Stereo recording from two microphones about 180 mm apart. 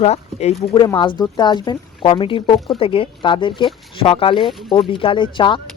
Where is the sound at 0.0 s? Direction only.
35° left (ahead or behind).